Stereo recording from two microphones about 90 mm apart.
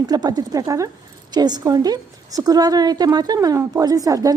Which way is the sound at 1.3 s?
50° right (ahead or behind).